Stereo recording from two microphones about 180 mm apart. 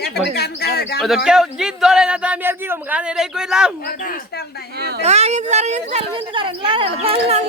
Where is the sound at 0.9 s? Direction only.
5° right (ahead or behind).